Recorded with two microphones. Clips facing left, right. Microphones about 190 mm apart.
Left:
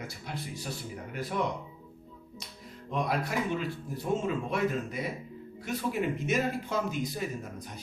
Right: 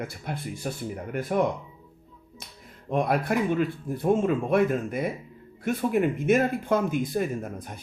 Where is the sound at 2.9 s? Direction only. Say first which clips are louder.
Right 6 dB; 55° right (ahead or behind).